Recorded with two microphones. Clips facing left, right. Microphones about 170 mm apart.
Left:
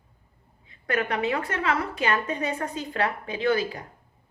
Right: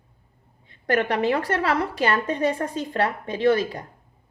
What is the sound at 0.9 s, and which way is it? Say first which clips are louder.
A woman's voice: right 4 dB; 35° right (ahead or behind).